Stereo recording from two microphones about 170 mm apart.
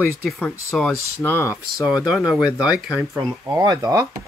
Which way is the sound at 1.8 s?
5° right (ahead or behind).